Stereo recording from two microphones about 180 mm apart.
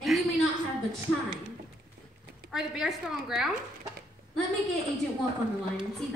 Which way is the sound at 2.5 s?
5° right (ahead or behind).